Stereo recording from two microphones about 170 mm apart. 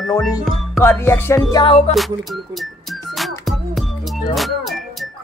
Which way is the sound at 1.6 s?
30° left (ahead or behind).